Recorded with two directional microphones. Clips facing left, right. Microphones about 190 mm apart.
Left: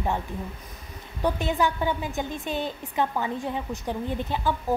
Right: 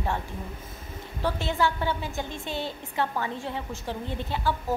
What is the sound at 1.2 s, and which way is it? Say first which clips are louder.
A woman's voice: left 2 dB; 15° left (ahead or behind).